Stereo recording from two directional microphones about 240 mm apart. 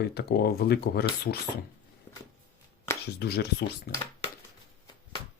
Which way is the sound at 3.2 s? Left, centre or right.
Left.